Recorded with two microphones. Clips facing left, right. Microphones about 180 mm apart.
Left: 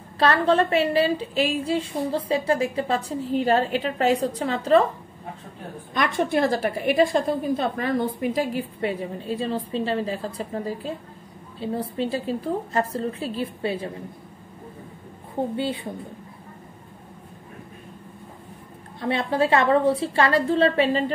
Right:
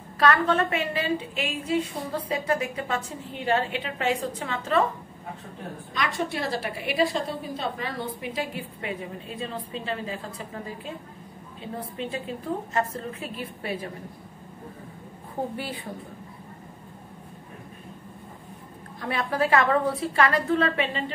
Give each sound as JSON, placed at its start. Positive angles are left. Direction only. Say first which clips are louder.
{"t": 0.2, "sound": "a woman's voice", "louder": "left 3 dB", "side_deg": 30}
{"t": 5.9, "sound": "a woman's voice", "louder": "left 7 dB", "side_deg": 50}
{"t": 15.5, "sound": "a woman's voice", "louder": "left 7 dB", "side_deg": 25}
{"t": 18.9, "sound": "a woman's voice", "louder": "left 4 dB", "side_deg": 25}